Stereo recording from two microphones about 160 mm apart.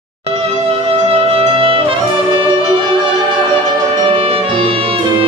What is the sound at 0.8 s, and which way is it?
Music, 35° right (ahead or behind).